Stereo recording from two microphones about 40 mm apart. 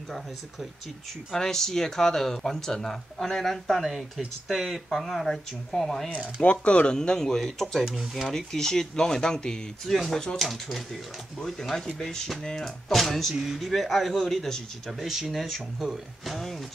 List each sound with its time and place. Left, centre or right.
1.3 s a man's voice: centre
6.4 s speech: left
7.0 s speech: centre
7.8 s speech: centre
8.3 s speech: centre
9.8 s a man's voice: centre
13.3 s speech: centre
13.6 s a man's voice: centre
14.9 s speech: centre
16.3 s a man's voice: centre